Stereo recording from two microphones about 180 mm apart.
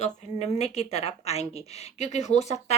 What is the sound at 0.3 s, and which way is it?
A woman's voice, 40° left (ahead or behind).